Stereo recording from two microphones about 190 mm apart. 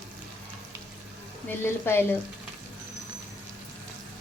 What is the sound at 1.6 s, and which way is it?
Frying, 10° left (ahead or behind).